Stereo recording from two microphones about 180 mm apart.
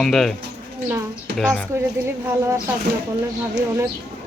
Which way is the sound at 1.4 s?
Centre (ahead or behind).